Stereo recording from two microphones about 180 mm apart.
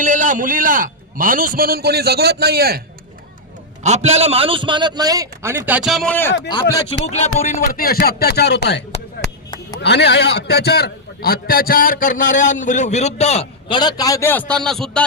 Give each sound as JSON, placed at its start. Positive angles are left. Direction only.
{"t": 0.0, "sound": "a man's voice", "side_deg": -45}
{"t": 3.8, "sound": "a man's voice", "side_deg": -40}
{"t": 6.5, "sound": "speech", "side_deg": 25}
{"t": 7.2, "sound": "speech", "side_deg": 40}
{"t": 9.2, "sound": "chop", "side_deg": 20}
{"t": 9.8, "sound": "a man's voice", "side_deg": 70}